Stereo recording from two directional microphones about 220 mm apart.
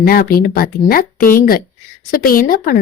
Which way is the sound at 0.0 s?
40° left (ahead or behind).